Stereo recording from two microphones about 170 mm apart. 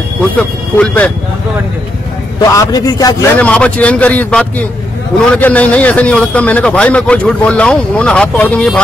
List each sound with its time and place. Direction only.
0.4 s a man's voice: 5° left (ahead or behind)
2.5 s a man's voice: 20° left (ahead or behind)
3.3 s a man's voice: 10° left (ahead or behind)